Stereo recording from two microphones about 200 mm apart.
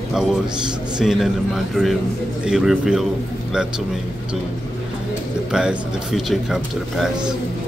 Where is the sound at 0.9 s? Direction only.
Centre (ahead or behind).